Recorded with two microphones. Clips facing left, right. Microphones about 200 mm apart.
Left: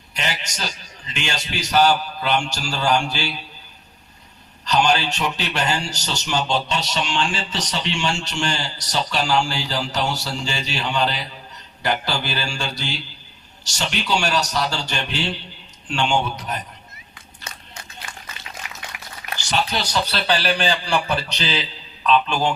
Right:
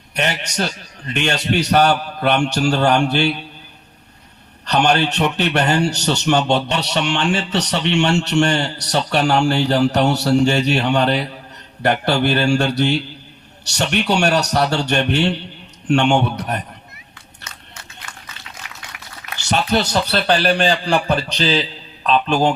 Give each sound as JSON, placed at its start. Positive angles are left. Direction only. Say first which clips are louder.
{"t": 0.1, "sound": "a man's voice", "louder": "right 6 dB", "side_deg": -65}
{"t": 4.6, "sound": "a man's voice", "louder": "right 3 dB", "side_deg": -60}
{"t": 17.5, "sound": "biting", "louder": "left 3 dB", "side_deg": 30}
{"t": 19.5, "sound": "speech", "louder": "right 6 dB", "side_deg": -50}